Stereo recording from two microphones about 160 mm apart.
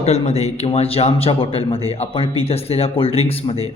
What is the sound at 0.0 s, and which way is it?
A man's voice, 40° left (ahead or behind).